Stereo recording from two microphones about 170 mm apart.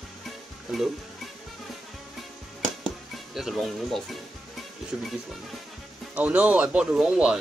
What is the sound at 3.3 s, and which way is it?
Speech, centre (ahead or behind).